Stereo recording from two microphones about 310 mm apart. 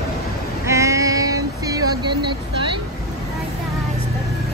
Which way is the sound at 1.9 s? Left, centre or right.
Centre.